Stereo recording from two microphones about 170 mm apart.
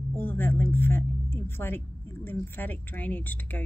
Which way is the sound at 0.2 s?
10° left (ahead or behind).